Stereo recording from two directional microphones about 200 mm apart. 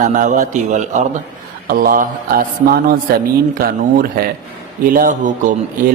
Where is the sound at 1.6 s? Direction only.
45° right (ahead or behind).